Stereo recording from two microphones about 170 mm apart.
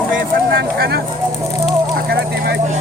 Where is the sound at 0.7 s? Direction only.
70° right (ahead or behind).